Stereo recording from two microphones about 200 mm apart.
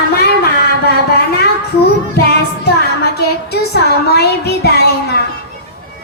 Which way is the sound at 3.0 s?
55° left (ahead or behind).